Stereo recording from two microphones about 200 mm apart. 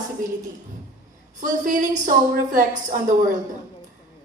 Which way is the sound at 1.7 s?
40° right (ahead or behind).